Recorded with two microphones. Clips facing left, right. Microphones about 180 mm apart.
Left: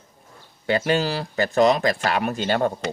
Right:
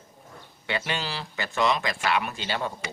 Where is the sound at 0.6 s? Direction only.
40° left (ahead or behind).